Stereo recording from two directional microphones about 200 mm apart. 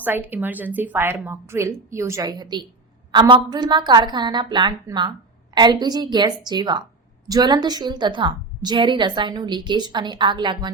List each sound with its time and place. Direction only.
0.0 s a woman's voice: 10° right (ahead or behind)